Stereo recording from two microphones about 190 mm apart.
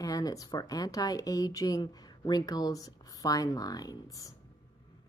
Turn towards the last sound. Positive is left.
turn(degrees=20)  # may be behind; listen again after turning